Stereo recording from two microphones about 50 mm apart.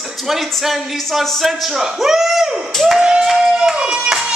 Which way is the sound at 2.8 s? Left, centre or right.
Centre.